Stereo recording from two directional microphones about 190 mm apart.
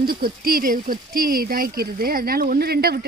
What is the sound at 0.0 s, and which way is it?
Speech, 50° right (ahead or behind).